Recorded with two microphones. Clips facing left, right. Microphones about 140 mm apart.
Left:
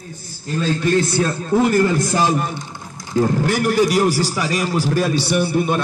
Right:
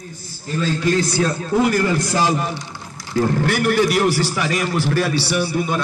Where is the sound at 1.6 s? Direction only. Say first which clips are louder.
Left 2 dB; 25° left (ahead or behind).